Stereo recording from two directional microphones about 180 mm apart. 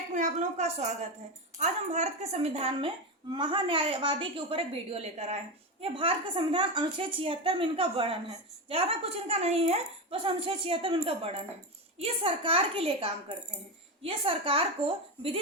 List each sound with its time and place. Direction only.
0.1 s a woman's voice: 40° right (ahead or behind)